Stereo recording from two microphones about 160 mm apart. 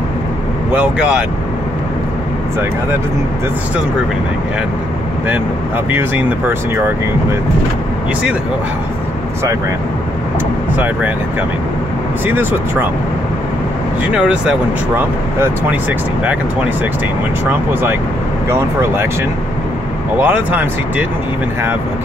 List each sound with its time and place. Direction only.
0.7 s speech: 5° right (ahead or behind)
5.9 s speech: 10° right (ahead or behind)
14.1 s speech: 5° right (ahead or behind)
18.5 s speech: 15° right (ahead or behind)
20.2 s speech: 10° right (ahead or behind)